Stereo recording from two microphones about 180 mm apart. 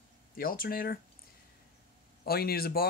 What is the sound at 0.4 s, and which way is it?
Speech, 55° left (ahead or behind).